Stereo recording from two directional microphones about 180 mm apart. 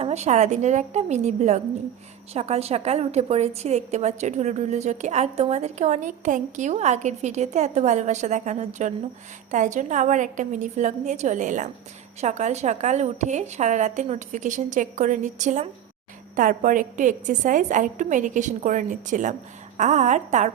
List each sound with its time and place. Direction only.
0.0 s a woman's voice: 40° right (ahead or behind)